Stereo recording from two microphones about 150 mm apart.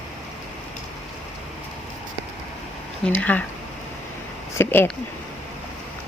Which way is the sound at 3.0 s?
10° left (ahead or behind).